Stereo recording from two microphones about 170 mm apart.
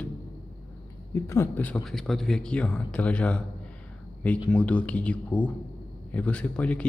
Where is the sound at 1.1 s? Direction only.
15° left (ahead or behind).